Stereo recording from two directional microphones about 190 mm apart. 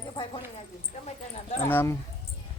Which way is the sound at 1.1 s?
35° left (ahead or behind).